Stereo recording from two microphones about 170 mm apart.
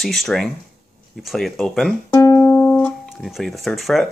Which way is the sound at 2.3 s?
10° left (ahead or behind).